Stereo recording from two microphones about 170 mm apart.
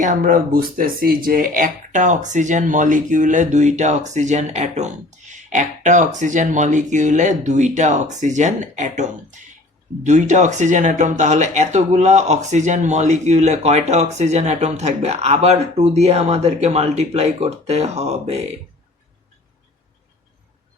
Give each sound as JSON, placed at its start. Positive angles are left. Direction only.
{"t": 0.0, "sound": "speech", "side_deg": -50}